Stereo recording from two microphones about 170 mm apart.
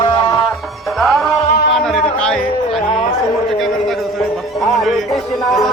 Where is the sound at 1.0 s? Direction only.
Centre (ahead or behind).